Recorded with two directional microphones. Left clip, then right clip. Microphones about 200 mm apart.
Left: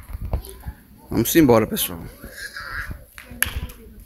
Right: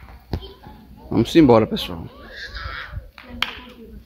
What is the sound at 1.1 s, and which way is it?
Speech, 5° left (ahead or behind).